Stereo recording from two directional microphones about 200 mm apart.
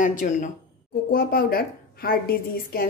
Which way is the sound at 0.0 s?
40° left (ahead or behind).